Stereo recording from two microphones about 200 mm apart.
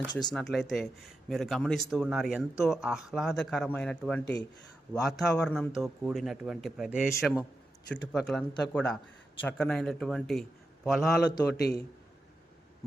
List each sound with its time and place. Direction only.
0.1 s speech: 20° left (ahead or behind)
0.3 s a man's voice: centre (ahead or behind)
11.5 s a man's voice: 55° left (ahead or behind)